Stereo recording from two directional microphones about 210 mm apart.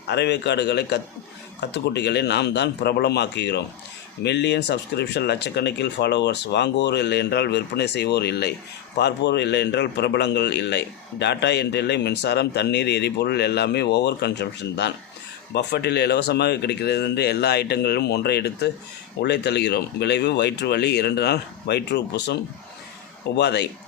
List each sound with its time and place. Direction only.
0.1 s a man's voice: 55° left (ahead or behind)
23.4 s a man's voice: 55° left (ahead or behind)